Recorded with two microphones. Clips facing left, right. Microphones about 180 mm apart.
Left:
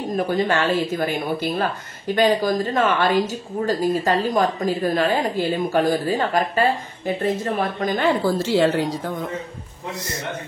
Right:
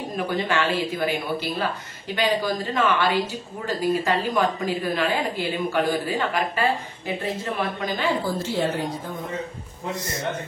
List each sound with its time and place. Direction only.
0.2 s speech: 40° left (ahead or behind)
8.4 s a woman's voice: 90° left